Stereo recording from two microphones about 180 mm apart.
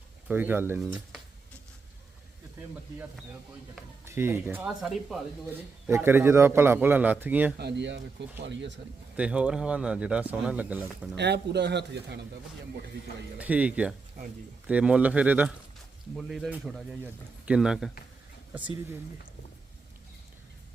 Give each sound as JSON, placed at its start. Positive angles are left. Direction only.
{"t": 0.3, "sound": "speech", "side_deg": -10}
{"t": 4.0, "sound": "speech", "side_deg": -15}
{"t": 5.9, "sound": "speech", "side_deg": -10}
{"t": 7.6, "sound": "speech", "side_deg": -75}
{"t": 9.1, "sound": "speech", "side_deg": -5}
{"t": 11.1, "sound": "speech", "side_deg": -70}
{"t": 13.4, "sound": "speech", "side_deg": -10}